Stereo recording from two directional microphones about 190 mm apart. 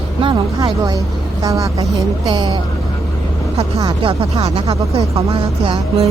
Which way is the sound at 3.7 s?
25° right (ahead or behind).